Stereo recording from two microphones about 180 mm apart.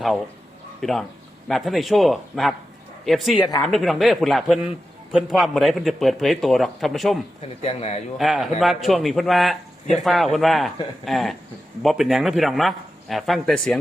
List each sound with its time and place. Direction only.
0.8 s a man's voice: centre (ahead or behind)
7.6 s a man's voice: 35° left (ahead or behind)
8.2 s a man's voice: centre (ahead or behind)